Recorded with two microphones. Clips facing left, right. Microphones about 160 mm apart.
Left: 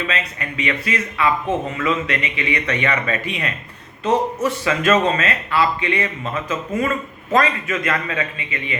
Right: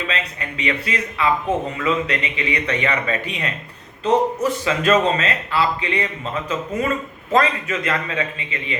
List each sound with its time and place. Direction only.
0.1 s a man's voice: 30° right (ahead or behind)